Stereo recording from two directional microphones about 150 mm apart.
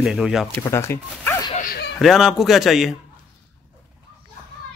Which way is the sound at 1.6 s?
75° left (ahead or behind).